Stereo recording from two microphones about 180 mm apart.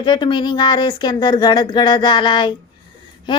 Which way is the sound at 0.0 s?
25° left (ahead or behind).